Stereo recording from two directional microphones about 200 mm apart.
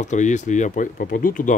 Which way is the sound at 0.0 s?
35° left (ahead or behind).